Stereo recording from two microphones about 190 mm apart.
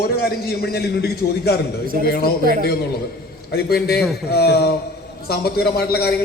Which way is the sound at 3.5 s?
55° left (ahead or behind).